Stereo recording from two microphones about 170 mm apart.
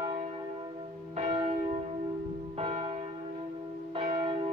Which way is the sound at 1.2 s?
35° right (ahead or behind).